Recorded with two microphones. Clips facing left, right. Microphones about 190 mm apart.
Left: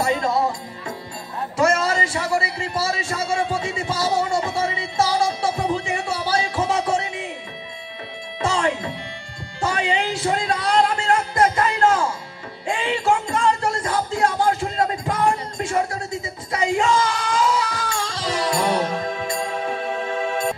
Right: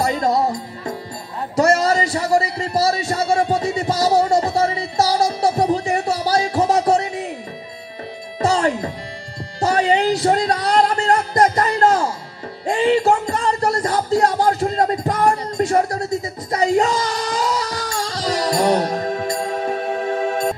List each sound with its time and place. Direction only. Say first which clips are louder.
0.0 s music: right 2 dB; 40° right (ahead or behind)
1.6 s a sound: right 4 dB; 35° right (ahead or behind)
8.4 s music: right 4 dB; 40° right (ahead or behind)